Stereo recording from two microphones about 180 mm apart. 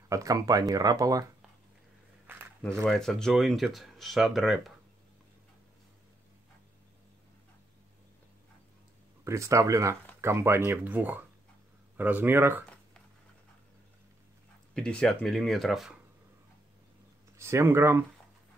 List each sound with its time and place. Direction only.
0.1 s speech: 20° right (ahead or behind)
2.8 s speech: centre (ahead or behind)
9.2 s speech: 15° right (ahead or behind)
14.7 s speech: 5° left (ahead or behind)
17.4 s speech: 15° right (ahead or behind)